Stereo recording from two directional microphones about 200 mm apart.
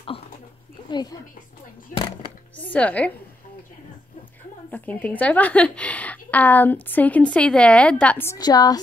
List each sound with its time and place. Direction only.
0.8 s speech: 20° left (ahead or behind)
2.5 s a woman's voice: 10° left (ahead or behind)
4.6 s a woman's voice: 10° left (ahead or behind)